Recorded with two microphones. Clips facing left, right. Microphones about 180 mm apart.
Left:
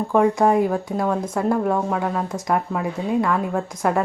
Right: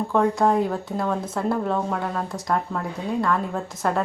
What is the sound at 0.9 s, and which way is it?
Speech, centre (ahead or behind).